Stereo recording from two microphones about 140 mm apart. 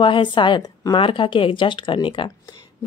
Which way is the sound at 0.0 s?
35° left (ahead or behind).